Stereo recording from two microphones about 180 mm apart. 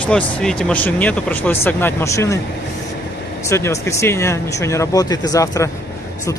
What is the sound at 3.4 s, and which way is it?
Speech, 15° left (ahead or behind).